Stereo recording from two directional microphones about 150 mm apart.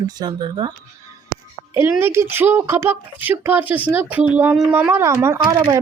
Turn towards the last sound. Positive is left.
turn(degrees=-30)  # may be behind; listen again after turning